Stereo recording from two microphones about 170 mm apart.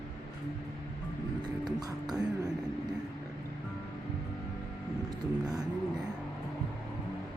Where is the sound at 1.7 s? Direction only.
25° right (ahead or behind).